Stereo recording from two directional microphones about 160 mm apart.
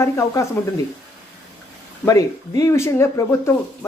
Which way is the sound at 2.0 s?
20° left (ahead or behind).